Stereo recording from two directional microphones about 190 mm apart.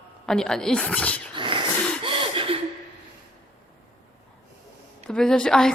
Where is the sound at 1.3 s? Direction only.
25° right (ahead or behind).